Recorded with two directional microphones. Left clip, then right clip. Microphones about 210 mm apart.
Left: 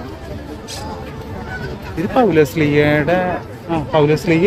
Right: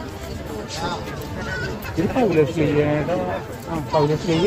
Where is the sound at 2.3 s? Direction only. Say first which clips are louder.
Left 5 dB; 25° left (ahead or behind).